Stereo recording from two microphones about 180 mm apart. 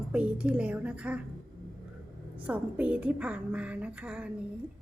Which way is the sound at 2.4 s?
10° right (ahead or behind).